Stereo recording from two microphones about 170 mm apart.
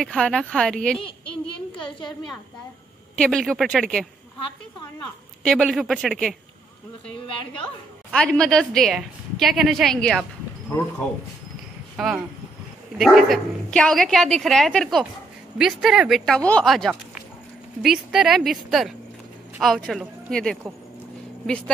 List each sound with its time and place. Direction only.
0.0 s speech: 5° left (ahead or behind)
0.9 s a woman's voice: 30° left (ahead or behind)
3.2 s speech: 5° left (ahead or behind)
5.4 s speech: 5° left (ahead or behind)
8.1 s speech: 5° left (ahead or behind)
12.0 s speech: centre (ahead or behind)